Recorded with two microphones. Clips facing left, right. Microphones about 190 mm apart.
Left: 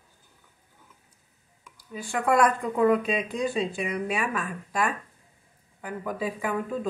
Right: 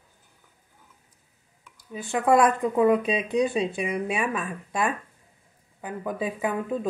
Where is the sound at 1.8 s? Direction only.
25° right (ahead or behind).